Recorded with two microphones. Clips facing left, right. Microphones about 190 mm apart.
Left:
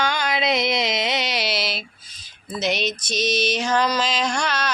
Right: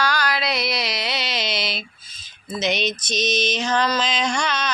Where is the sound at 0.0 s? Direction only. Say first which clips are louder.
Even; 20° left (ahead or behind); by 1.8 s 5° left (ahead or behind).